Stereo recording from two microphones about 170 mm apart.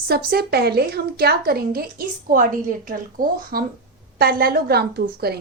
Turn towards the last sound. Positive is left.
turn(degrees=-70)  # may be behind; listen again after turning